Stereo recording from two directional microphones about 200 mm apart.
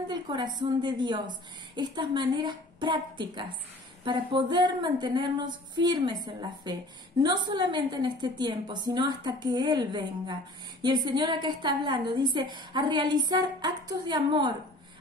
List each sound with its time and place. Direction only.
0.1 s a woman's voice: 20° right (ahead or behind)